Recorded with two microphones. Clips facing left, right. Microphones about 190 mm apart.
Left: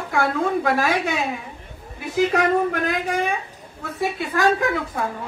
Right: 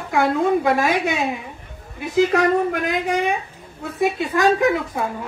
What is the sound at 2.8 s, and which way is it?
A man's voice, 20° right (ahead or behind).